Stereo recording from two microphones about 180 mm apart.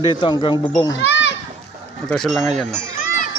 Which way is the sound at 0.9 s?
80° left.